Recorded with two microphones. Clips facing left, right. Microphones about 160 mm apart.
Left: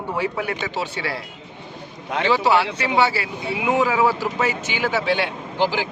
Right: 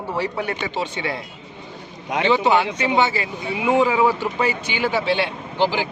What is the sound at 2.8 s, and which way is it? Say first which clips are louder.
Speech: right 1 dB; centre (ahead or behind).